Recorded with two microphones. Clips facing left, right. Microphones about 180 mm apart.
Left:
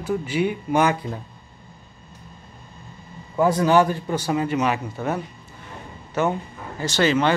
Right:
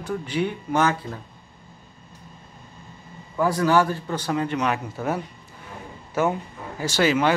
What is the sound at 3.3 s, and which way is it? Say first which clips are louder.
Speech: left 3 dB; 20° left (ahead or behind).